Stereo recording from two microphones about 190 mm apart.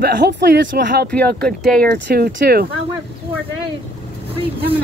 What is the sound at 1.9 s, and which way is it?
Speech, 55° right (ahead or behind).